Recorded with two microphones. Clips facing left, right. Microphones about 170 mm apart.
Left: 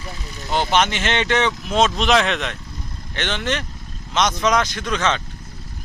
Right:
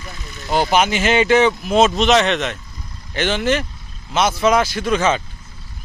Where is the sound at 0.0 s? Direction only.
30° left (ahead or behind).